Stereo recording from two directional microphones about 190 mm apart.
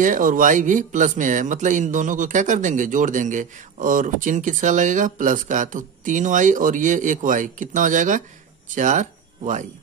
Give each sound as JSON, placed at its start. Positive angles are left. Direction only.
{"t": 0.0, "sound": "speech", "side_deg": -45}